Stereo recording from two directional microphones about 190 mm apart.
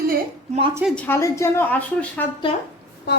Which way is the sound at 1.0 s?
15° left (ahead or behind).